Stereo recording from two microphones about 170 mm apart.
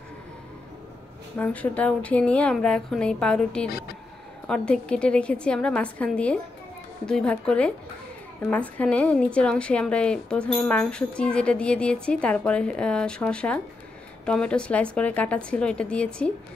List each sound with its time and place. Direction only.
1.4 s a woman's voice: 10° left (ahead or behind)
3.6 s speech: 60° left (ahead or behind)
4.5 s a woman's voice: 5° left (ahead or behind)